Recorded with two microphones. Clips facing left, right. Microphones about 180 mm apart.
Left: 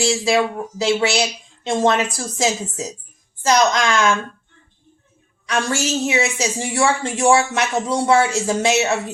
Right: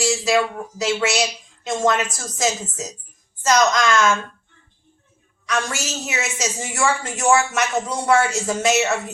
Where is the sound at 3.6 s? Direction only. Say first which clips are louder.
Even; 15° left (ahead or behind).